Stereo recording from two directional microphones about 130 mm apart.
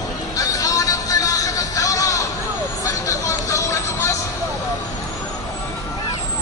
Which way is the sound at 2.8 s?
25° left (ahead or behind).